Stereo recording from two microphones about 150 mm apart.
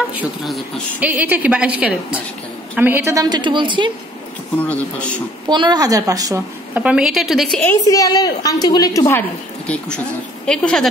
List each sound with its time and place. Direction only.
0.9 s a woman's voice: 10° right (ahead or behind); by 3.9 s 35° right (ahead or behind)
4.6 s speech: 10° left (ahead or behind)
5.5 s a woman's voice: 30° right (ahead or behind)
6.7 s a woman's voice: 10° right (ahead or behind)
7.8 s a woman's voice: 25° left (ahead or behind)
9.7 s a woman's voice: 5° left (ahead or behind)